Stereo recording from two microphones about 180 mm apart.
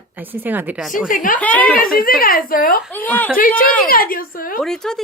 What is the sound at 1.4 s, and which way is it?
Speech, 10° left (ahead or behind).